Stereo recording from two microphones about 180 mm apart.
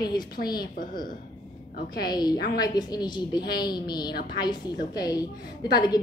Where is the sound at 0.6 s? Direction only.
50° left (ahead or behind).